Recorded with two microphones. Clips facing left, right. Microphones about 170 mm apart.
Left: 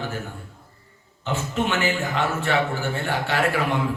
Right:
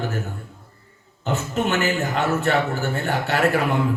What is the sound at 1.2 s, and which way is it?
Speech, 40° right (ahead or behind).